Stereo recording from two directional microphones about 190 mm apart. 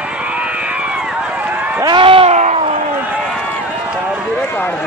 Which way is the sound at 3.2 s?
5° left (ahead or behind).